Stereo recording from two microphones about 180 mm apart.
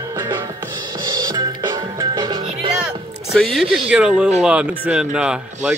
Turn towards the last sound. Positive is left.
turn(degrees=-5)  # may be behind; listen again after turning